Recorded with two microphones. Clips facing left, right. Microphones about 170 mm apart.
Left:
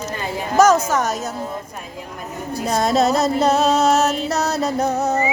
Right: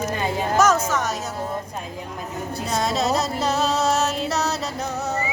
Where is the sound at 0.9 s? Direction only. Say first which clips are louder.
Left 4 dB; 45° left (ahead or behind).